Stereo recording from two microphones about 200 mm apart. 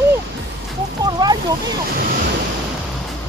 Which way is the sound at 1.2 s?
20° right (ahead or behind).